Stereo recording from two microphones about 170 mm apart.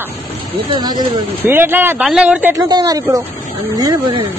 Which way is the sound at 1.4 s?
10° right (ahead or behind).